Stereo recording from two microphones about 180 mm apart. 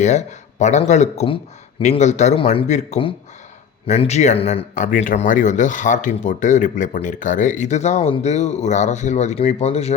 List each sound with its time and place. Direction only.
0.0 s speech: 40° left (ahead or behind)